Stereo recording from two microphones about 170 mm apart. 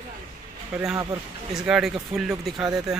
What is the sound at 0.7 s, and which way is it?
Speech, 5° right (ahead or behind).